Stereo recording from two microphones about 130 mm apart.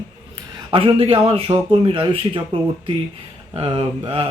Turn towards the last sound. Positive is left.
turn(degrees=-45)  # may be behind; listen again after turning